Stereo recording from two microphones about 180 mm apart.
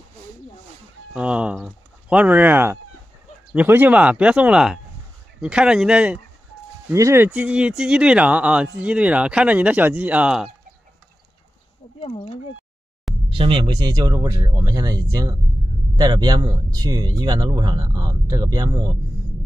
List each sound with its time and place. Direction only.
1.1 s speech: 5° right (ahead or behind)
6.9 s speech: 15° right (ahead or behind)
12.0 s speech: 30° left (ahead or behind)
13.3 s speech: 30° right (ahead or behind)